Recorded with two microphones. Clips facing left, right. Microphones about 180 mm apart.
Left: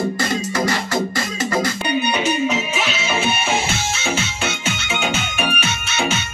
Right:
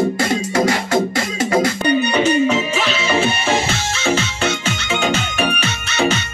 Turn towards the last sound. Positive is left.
turn(degrees=-35)  # may be behind; listen again after turning